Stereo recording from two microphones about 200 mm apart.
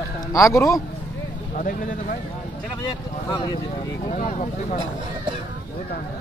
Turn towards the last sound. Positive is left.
turn(degrees=40)  # may be behind; listen again after turning